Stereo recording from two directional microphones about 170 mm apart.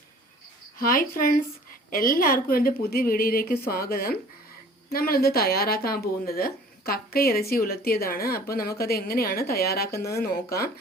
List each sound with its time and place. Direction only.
0.8 s speech: 55° left (ahead or behind)